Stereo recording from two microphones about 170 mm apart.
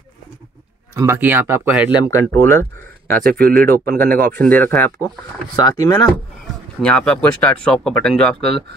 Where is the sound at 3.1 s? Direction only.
60° right (ahead or behind).